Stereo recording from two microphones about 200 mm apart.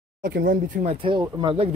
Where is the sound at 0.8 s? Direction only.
25° right (ahead or behind).